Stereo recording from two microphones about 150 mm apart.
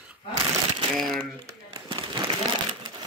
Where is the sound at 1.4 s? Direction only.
30° right (ahead or behind).